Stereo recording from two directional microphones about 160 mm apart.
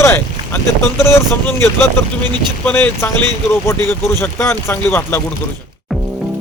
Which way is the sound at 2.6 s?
10° left (ahead or behind).